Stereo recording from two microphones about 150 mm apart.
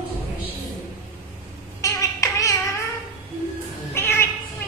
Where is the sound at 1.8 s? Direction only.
20° left (ahead or behind).